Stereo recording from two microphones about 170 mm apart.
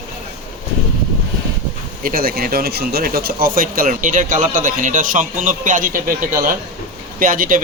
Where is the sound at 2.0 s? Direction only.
60° right (ahead or behind).